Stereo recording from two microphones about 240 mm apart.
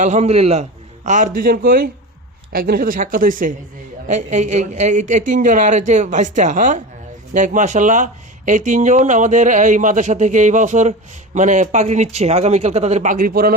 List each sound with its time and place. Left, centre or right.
0.0 s speech: right